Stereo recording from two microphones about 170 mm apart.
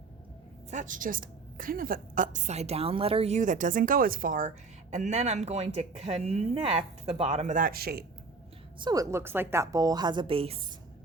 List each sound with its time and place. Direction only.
0.7 s a woman's voice: 50° right (ahead or behind); by 8.0 s 65° right (ahead or behind)
8.8 s a woman's voice: 20° right (ahead or behind)